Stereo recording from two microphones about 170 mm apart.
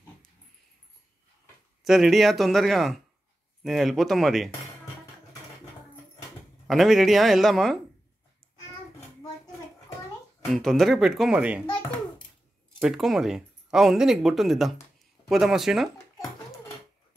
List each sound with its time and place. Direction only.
1.9 s speech: centre (ahead or behind)
6.7 s speech: centre (ahead or behind)
10.5 s speech: centre (ahead or behind)
12.8 s speech: centre (ahead or behind)